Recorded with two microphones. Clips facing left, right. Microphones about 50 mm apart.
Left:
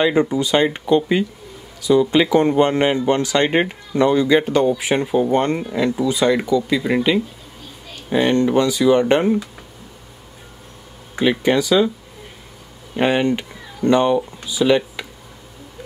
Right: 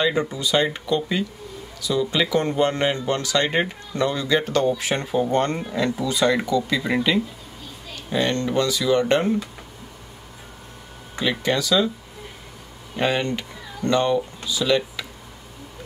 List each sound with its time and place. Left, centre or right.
0.0 s a man's voice: left
11.1 s a man's voice: centre
12.9 s a man's voice: centre